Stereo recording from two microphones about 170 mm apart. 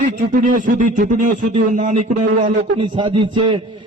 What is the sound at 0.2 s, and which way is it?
A man's voice, 50° right (ahead or behind).